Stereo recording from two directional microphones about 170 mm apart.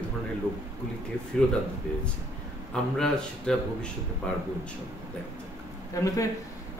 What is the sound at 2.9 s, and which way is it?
Speech, 5° left (ahead or behind).